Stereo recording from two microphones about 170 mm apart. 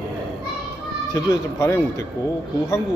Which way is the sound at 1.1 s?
15° left (ahead or behind).